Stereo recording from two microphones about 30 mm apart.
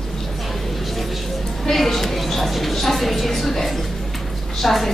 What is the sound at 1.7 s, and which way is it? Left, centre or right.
A woman's voice, centre.